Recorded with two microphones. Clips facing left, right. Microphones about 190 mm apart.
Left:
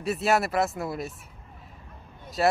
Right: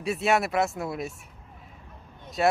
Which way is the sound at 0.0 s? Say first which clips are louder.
Even; centre (ahead or behind).